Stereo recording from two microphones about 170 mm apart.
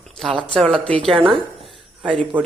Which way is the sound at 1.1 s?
30° right (ahead or behind).